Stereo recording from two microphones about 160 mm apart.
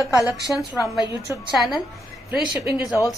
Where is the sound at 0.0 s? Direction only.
20° left (ahead or behind).